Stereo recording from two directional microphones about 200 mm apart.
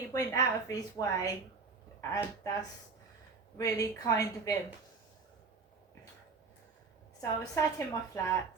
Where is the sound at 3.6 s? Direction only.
15° left (ahead or behind).